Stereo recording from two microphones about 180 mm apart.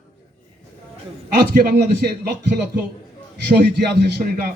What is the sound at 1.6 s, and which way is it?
Speech, 65° right (ahead or behind).